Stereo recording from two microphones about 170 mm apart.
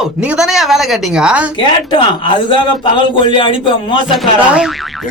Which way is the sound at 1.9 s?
30° left (ahead or behind).